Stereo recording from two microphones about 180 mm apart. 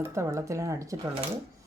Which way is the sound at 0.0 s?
15° right (ahead or behind).